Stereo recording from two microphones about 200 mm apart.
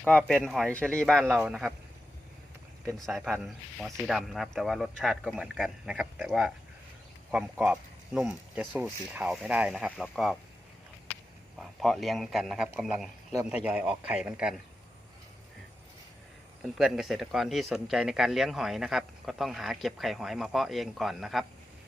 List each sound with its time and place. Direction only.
0.0 s speech: 5° left (ahead or behind)
2.8 s speech: centre (ahead or behind)
11.6 s speech: centre (ahead or behind)
16.6 s speech: centre (ahead or behind)